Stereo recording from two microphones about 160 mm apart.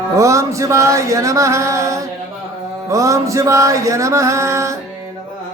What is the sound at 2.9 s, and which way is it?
Music, 20° right (ahead or behind).